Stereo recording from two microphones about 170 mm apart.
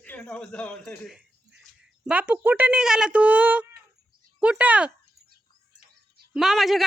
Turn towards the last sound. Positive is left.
turn(degrees=0)  # may be behind; listen again after turning